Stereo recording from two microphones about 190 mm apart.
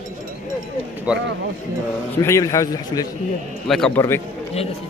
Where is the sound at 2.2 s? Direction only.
15° left (ahead or behind).